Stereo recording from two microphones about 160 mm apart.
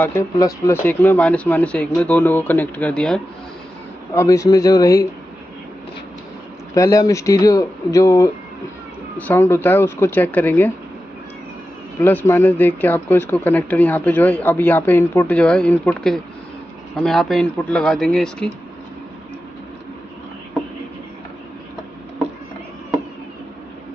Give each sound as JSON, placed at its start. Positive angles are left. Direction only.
{"t": 0.4, "sound": "speech", "side_deg": 20}
{"t": 0.8, "sound": "speech", "side_deg": 10}
{"t": 4.1, "sound": "speech", "side_deg": 20}
{"t": 6.7, "sound": "speech", "side_deg": 20}
{"t": 12.0, "sound": "speech", "side_deg": 15}